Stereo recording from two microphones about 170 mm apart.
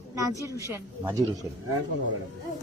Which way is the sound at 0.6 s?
15° right (ahead or behind).